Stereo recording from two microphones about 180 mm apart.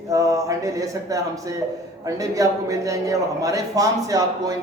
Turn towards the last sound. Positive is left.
turn(degrees=-20)  # may be behind; listen again after turning